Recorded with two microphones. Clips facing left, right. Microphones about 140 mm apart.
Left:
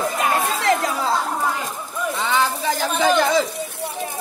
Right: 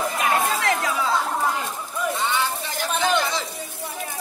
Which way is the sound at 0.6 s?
35° left (ahead or behind).